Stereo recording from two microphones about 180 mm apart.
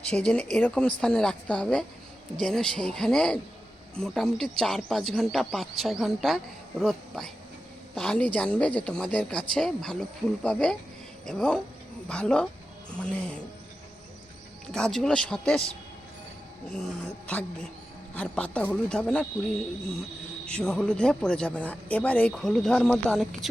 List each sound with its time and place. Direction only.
0.0 s speech: 5° left (ahead or behind)
14.7 s speech: 5° left (ahead or behind)
16.7 s a man's voice: 5° left (ahead or behind)
20.4 s speech: 5° left (ahead or behind)